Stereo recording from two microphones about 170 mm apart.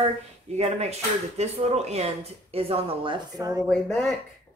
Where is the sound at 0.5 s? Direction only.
40° right (ahead or behind); by 3.6 s 20° right (ahead or behind).